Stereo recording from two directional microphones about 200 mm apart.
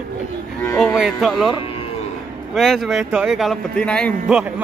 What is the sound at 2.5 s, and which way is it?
Speech, centre (ahead or behind).